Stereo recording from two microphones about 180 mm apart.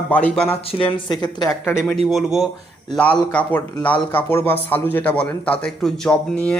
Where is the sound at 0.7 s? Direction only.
30° left (ahead or behind).